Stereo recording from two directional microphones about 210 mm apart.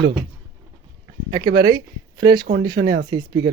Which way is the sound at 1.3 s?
20° right (ahead or behind).